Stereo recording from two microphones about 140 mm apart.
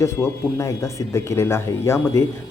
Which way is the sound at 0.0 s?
20° left (ahead or behind).